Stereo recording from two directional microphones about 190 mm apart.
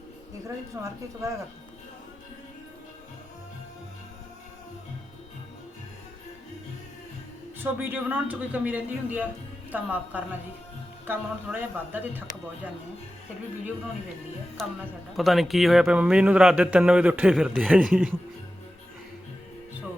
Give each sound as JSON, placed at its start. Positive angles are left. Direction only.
{"t": 0.4, "sound": "a man's voice", "side_deg": -15}
{"t": 7.6, "sound": "a man's voice", "side_deg": -10}
{"t": 14.6, "sound": "a man's voice", "side_deg": 0}